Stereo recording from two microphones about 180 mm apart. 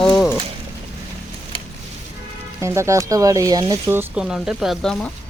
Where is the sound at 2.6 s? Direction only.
15° right (ahead or behind); by 5.1 s 5° left (ahead or behind).